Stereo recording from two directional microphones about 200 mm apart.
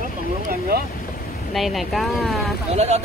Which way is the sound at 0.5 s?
50° right (ahead or behind).